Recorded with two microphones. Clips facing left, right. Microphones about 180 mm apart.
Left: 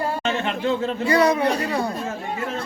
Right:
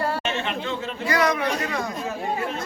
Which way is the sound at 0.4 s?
35° left (ahead or behind).